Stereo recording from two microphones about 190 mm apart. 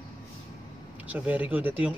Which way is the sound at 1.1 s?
10° right (ahead or behind).